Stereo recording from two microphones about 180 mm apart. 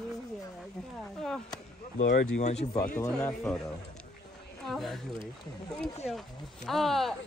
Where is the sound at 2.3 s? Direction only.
40° left (ahead or behind).